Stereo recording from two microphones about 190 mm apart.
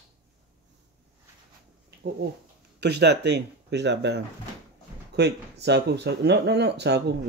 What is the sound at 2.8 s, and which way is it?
Speech, 60° right (ahead or behind).